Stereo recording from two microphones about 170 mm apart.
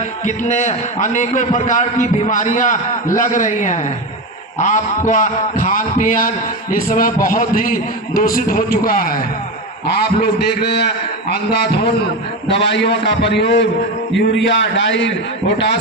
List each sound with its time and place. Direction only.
0.3 s a man's voice: 45° left (ahead or behind)
9.8 s a man's voice: 75° left (ahead or behind)
12.5 s a man's voice: 90° left